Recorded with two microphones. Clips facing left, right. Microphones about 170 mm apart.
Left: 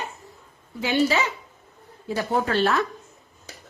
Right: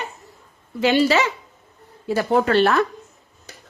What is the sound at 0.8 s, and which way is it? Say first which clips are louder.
Speech: right 5 dB; 90° right.